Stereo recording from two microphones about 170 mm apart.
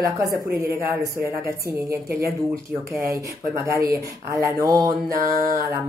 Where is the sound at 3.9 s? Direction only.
15° right (ahead or behind).